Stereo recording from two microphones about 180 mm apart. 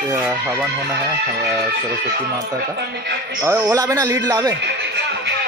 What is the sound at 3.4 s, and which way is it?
Speech, 10° right (ahead or behind).